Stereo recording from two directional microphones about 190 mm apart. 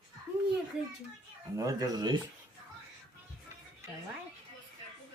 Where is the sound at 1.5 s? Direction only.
20° right (ahead or behind).